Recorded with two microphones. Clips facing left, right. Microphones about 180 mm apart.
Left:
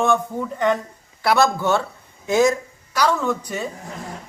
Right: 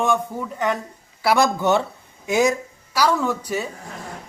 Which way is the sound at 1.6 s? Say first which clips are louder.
Right 1 dB; 20° right (ahead or behind).